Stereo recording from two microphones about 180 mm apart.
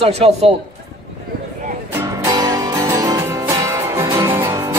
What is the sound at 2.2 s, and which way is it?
Music, 20° right (ahead or behind).